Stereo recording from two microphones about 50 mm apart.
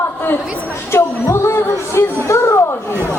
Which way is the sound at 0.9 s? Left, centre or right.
Left.